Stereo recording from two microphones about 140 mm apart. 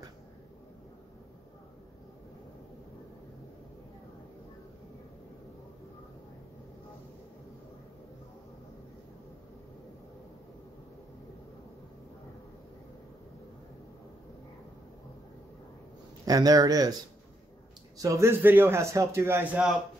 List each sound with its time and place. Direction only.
16.3 s a man's voice: 25° right (ahead or behind)
17.9 s a man's voice: 25° right (ahead or behind)